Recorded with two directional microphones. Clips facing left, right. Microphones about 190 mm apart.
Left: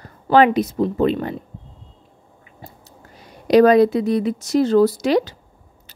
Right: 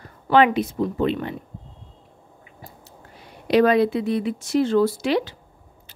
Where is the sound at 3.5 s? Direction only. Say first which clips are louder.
Left 5 dB; 40° left (ahead or behind).